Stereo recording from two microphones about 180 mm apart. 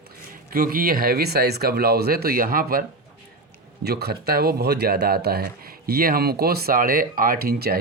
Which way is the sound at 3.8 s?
65° right (ahead or behind).